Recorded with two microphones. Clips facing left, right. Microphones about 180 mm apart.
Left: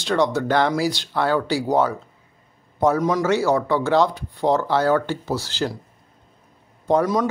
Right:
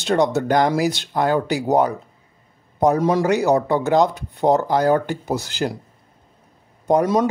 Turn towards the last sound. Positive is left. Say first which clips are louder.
# right 2 dB
turn(degrees=-20)  # may be behind; listen again after turning